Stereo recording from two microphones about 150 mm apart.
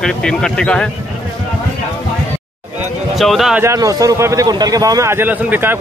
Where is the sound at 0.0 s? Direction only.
5° left (ahead or behind).